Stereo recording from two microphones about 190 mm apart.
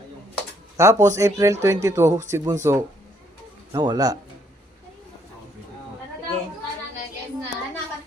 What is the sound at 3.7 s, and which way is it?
Speech, 20° right (ahead or behind).